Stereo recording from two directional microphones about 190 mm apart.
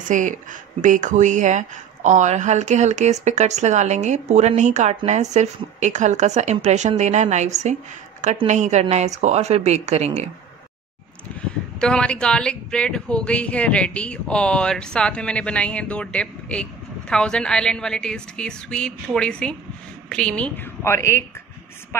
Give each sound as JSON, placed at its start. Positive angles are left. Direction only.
{"t": 0.0, "sound": "speech", "side_deg": -40}
{"t": 11.8, "sound": "a woman's voice", "side_deg": 5}